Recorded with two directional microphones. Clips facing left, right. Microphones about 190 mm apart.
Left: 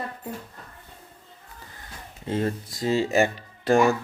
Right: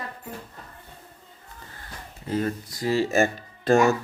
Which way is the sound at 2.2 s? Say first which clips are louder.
Even; 25° left (ahead or behind).